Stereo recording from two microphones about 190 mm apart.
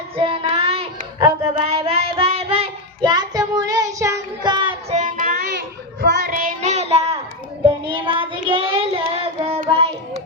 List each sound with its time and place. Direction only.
0.2 s child singing: 30° right (ahead or behind)
4.9 s child singing: 45° right (ahead or behind); by 9.9 s 30° right (ahead or behind)